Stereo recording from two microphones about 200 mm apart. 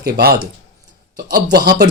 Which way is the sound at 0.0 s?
50° right (ahead or behind).